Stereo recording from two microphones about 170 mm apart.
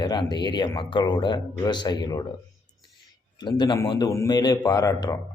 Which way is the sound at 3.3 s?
25° left (ahead or behind).